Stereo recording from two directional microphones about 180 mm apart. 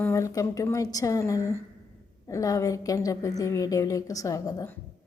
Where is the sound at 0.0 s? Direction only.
15° left (ahead or behind).